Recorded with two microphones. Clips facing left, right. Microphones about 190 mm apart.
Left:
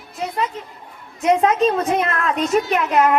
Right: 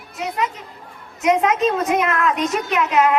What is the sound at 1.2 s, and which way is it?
A woman's voice, 35° left (ahead or behind).